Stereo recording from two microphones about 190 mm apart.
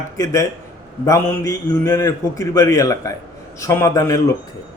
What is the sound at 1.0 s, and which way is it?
A man's voice, 15° left (ahead or behind).